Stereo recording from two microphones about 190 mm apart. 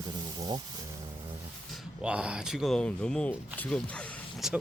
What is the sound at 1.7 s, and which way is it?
Speech, 5° right (ahead or behind).